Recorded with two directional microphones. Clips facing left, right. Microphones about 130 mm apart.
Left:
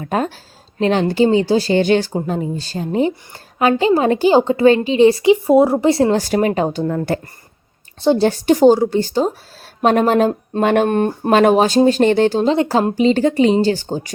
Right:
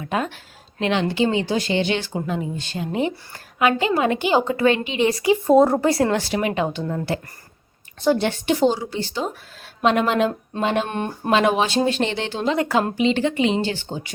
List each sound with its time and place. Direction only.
0.0 s a woman's voice: 40° left (ahead or behind)
1.7 s a woman's voice: 45° left (ahead or behind); by 5.3 s 30° left (ahead or behind)
5.3 s speech: 10° left (ahead or behind)
5.8 s speech: 25° left (ahead or behind)
6.1 s a woman's voice: 45° left (ahead or behind)
6.8 s speech: 55° left (ahead or behind)
8.0 s a woman's voice: 30° left (ahead or behind)
10.6 s a woman's voice: 55° left (ahead or behind)